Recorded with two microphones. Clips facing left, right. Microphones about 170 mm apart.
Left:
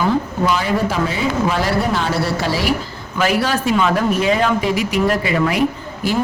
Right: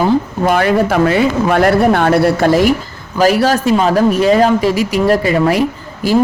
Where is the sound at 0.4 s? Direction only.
60° right (ahead or behind).